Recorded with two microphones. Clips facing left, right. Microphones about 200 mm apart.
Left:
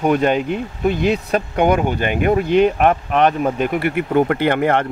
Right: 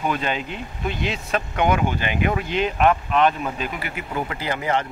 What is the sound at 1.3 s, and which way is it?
Speech, 40° left (ahead or behind).